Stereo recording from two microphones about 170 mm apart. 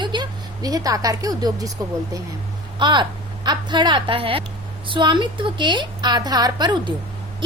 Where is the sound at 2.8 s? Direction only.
25° right (ahead or behind).